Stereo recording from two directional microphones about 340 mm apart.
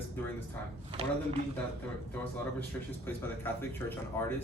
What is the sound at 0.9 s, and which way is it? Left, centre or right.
Speech, centre.